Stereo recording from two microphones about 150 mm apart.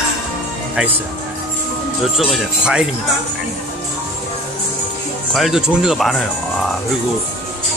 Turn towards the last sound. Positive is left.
turn(degrees=0)  # may be behind; listen again after turning